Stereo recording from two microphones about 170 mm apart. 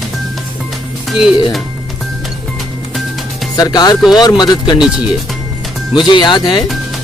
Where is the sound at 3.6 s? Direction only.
25° left (ahead or behind).